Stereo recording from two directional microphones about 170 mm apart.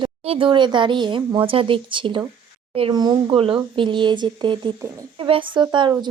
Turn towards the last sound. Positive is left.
turn(degrees=-25)  # may be behind; listen again after turning